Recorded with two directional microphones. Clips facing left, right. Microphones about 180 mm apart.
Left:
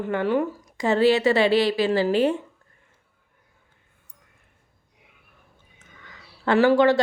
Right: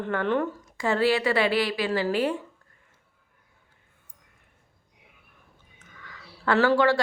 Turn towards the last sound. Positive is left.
turn(degrees=20)  # may be behind; listen again after turning